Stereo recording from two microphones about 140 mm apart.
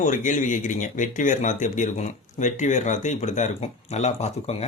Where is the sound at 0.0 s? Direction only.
65° left (ahead or behind).